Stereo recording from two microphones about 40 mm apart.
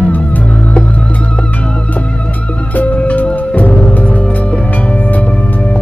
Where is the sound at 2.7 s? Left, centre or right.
Left.